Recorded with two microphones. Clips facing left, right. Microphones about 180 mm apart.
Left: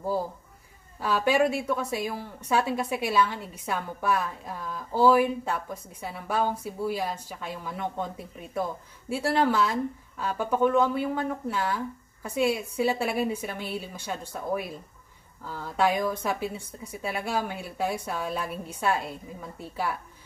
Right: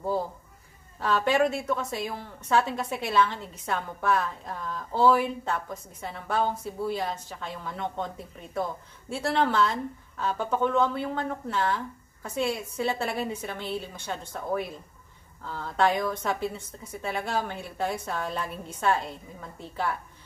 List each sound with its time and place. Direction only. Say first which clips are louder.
1.0 s a woman's voice: even; 10° left (ahead or behind)
9.1 s a woman's voice: left 1 dB; 10° left (ahead or behind)